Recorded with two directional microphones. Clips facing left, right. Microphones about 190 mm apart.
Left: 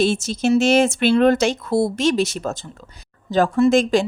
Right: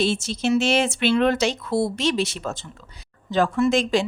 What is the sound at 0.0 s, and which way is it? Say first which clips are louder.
Speech: left 4 dB; 45° left (ahead or behind).